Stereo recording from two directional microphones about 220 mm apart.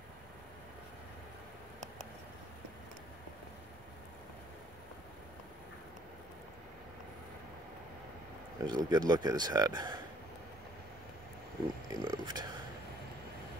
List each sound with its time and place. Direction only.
8.6 s speech: 20° right (ahead or behind)
11.9 s speech: 20° right (ahead or behind)